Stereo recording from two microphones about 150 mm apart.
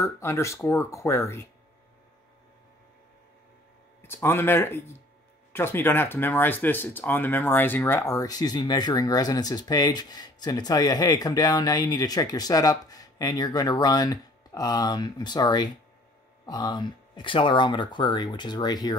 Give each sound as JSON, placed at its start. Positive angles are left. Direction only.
{"t": 0.0, "sound": "speech", "side_deg": 20}
{"t": 4.1, "sound": "speech", "side_deg": 15}